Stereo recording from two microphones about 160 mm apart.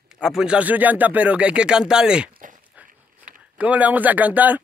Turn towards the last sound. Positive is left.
turn(degrees=-10)  # may be behind; listen again after turning